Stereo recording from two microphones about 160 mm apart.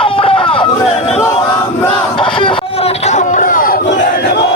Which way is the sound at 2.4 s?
30° left (ahead or behind).